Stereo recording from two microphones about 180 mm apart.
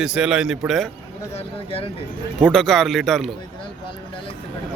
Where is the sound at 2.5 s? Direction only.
Centre (ahead or behind).